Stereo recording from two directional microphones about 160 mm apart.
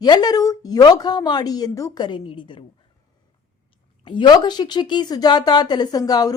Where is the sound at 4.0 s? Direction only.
30° left (ahead or behind).